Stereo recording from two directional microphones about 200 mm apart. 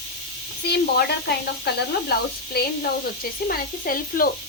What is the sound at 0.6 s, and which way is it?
Speech, 55° left (ahead or behind).